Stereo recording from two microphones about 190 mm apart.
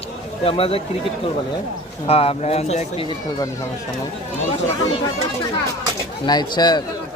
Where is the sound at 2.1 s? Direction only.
30° left (ahead or behind).